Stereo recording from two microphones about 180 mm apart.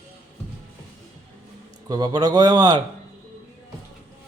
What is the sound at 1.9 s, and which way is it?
Speech, 20° right (ahead or behind).